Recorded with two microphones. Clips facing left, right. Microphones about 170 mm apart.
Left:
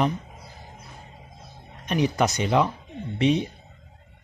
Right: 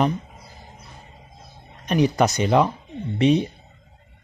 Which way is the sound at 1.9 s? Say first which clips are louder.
Right 4 dB; 40° right (ahead or behind).